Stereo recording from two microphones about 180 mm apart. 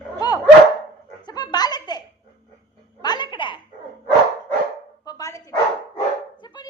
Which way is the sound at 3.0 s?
25° left (ahead or behind).